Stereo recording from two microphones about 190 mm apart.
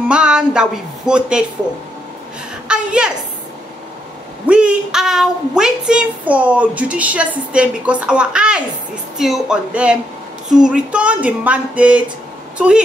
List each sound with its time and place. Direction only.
0.1 s speech: 5° right (ahead or behind)
2.7 s a woman's voice: 5° right (ahead or behind)
4.5 s a woman's voice: 5° right (ahead or behind)
10.5 s a sound: 5° right (ahead or behind)
12.5 s a woman's voice: 5° right (ahead or behind)